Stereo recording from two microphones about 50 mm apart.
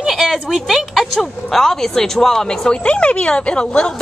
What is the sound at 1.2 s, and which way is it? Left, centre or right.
Speech, centre.